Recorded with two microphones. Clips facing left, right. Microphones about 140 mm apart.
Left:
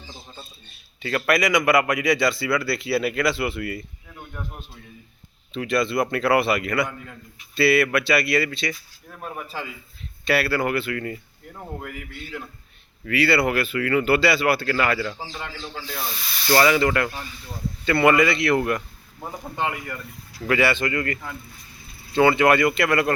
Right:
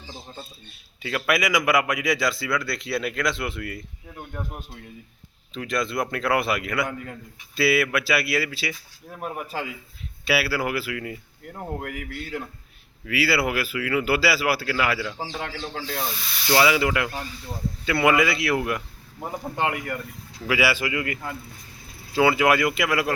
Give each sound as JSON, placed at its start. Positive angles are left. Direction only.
{"t": 1.0, "sound": "a man's voice", "side_deg": -5}
{"t": 5.5, "sound": "a man's voice", "side_deg": 0}
{"t": 11.8, "sound": "a man's voice", "side_deg": -70}
{"t": 13.1, "sound": "a man's voice", "side_deg": -5}
{"t": 16.5, "sound": "a man's voice", "side_deg": -5}
{"t": 19.7, "sound": "speech", "side_deg": -60}
{"t": 20.4, "sound": "a man's voice", "side_deg": -5}